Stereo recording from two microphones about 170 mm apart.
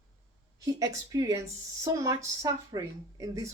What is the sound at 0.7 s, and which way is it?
Speech, 20° right (ahead or behind).